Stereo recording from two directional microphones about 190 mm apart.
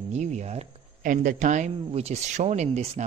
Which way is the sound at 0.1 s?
35° right (ahead or behind).